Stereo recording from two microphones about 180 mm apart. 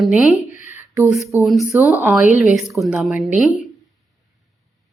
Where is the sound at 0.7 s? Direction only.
10° right (ahead or behind).